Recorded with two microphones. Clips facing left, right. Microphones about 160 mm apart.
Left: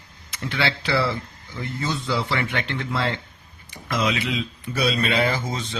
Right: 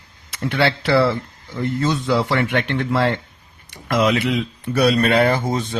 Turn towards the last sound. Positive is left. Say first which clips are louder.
# right 7 dB
turn(degrees=-55)  # may be behind; listen again after turning